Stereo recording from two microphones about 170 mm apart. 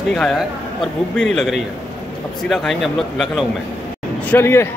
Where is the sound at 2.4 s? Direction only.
Centre (ahead or behind).